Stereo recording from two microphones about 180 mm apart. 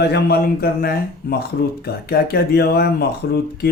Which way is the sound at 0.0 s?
65° left (ahead or behind).